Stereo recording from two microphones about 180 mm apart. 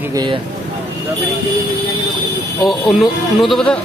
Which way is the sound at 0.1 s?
25° right (ahead or behind).